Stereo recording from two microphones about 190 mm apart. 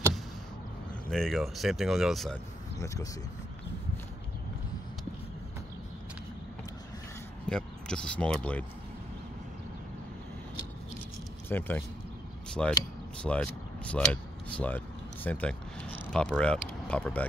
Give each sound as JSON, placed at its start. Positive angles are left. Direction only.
{"t": 1.1, "sound": "speech", "side_deg": 0}
{"t": 2.8, "sound": "speech", "side_deg": 15}
{"t": 7.4, "sound": "speech", "side_deg": 5}
{"t": 11.4, "sound": "speech", "side_deg": 10}